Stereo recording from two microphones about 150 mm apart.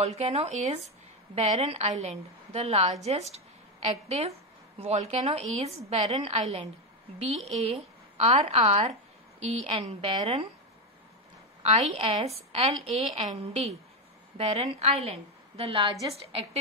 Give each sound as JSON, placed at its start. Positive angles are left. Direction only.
{"t": 0.0, "sound": "a woman's voice", "side_deg": -45}
{"t": 11.6, "sound": "a woman's voice", "side_deg": -45}